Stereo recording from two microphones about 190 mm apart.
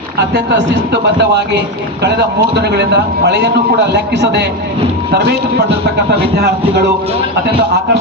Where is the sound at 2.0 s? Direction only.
60° right (ahead or behind).